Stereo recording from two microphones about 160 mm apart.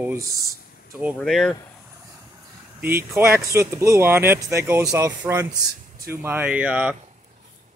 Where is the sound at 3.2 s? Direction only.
15° right (ahead or behind).